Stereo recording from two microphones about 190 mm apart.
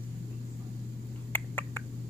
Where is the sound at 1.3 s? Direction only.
10° left (ahead or behind).